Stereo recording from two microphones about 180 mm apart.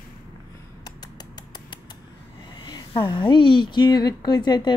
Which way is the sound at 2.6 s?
25° left (ahead or behind).